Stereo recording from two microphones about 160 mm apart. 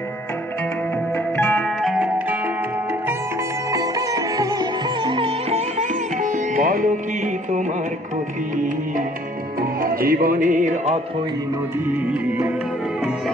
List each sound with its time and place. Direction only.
1.3 s music: 10° left (ahead or behind)
1.8 s music: 5° right (ahead or behind)
3.7 s music: 25° right (ahead or behind); by 7.0 s 55° right (ahead or behind)
9.6 s music: 65° right (ahead or behind)
12.1 s music: 10° right (ahead or behind)